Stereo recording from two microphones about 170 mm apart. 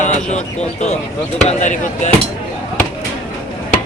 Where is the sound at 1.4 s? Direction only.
45° left (ahead or behind).